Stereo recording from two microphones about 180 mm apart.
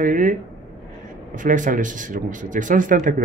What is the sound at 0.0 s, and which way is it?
Speech, 45° right (ahead or behind).